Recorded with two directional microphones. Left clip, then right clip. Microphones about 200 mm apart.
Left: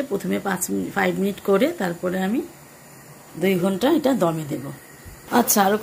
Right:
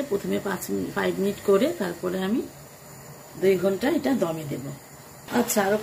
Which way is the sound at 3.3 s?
20° left (ahead or behind).